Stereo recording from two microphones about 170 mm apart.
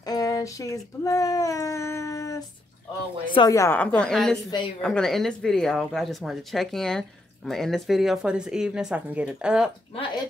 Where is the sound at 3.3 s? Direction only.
20° left (ahead or behind); by 9.7 s 5° right (ahead or behind).